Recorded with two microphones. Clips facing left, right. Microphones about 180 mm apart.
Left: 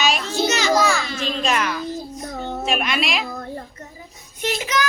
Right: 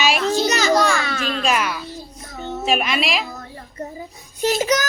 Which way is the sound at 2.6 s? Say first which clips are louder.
Right 3 dB; centre (ahead or behind).